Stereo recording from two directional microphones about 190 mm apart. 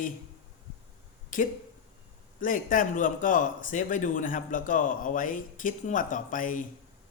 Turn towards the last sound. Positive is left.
turn(degrees=45)  # may be behind; listen again after turning